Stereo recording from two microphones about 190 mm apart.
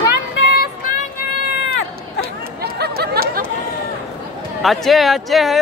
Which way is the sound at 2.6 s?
55° right (ahead or behind).